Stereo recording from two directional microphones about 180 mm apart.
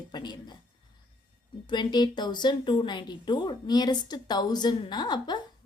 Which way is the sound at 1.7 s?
25° left (ahead or behind).